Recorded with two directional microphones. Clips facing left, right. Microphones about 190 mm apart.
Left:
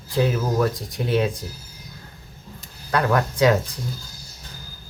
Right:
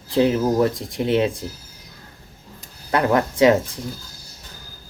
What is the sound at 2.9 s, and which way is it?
Speech, 25° right (ahead or behind).